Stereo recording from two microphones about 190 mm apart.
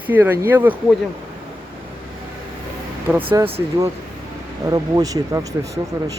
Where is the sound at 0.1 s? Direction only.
10° right (ahead or behind).